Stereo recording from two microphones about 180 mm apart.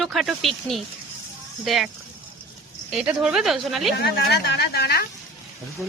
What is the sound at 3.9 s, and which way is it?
Speech, 65° left (ahead or behind).